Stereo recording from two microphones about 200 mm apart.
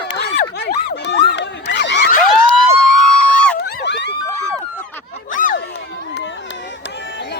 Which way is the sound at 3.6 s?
60° left (ahead or behind).